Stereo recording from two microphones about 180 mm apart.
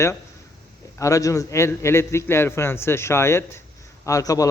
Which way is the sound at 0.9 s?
15° left (ahead or behind).